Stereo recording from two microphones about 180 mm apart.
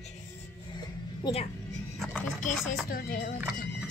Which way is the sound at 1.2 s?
35° left (ahead or behind).